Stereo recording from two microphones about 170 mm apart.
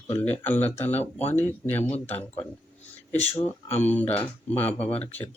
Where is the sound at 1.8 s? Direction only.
40° left (ahead or behind).